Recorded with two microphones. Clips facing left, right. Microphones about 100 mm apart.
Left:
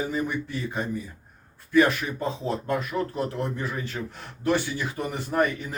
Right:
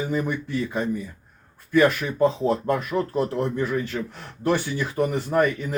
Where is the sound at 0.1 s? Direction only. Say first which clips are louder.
Right 3 dB; 55° right (ahead or behind).